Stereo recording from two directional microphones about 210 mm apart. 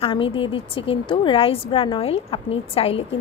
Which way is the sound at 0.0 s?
25° left (ahead or behind).